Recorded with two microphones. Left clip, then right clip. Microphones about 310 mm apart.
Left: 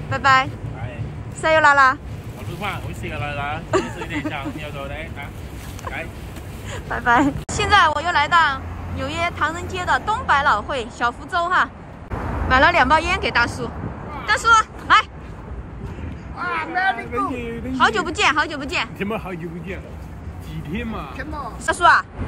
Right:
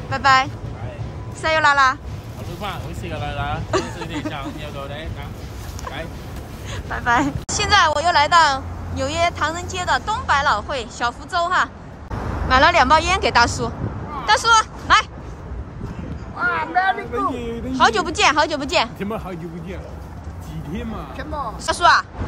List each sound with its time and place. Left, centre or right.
0.1 s a woman's voice: centre
2.6 s a woman's voice: centre
3.7 s a woman's voice: centre
6.7 s a woman's voice: centre
16.3 s speech: right
17.5 s a woman's voice: centre